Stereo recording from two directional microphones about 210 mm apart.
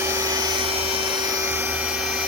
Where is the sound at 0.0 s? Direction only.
10° right (ahead or behind).